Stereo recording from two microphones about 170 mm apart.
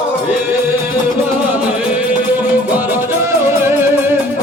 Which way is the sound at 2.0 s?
10° right (ahead or behind).